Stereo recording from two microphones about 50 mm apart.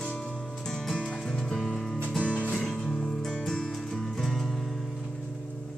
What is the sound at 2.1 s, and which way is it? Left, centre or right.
Music, left.